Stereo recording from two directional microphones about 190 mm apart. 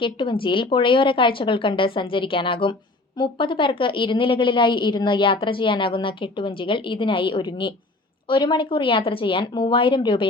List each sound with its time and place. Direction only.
0.0 s a woman's voice: 25° left (ahead or behind)